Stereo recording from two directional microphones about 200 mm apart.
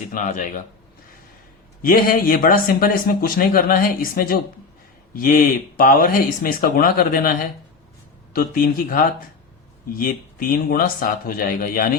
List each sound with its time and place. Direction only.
0.1 s speech: 40° left (ahead or behind)
1.8 s speech: 45° left (ahead or behind)